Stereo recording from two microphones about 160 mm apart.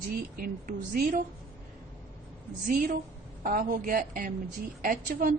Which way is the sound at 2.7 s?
55° right (ahead or behind).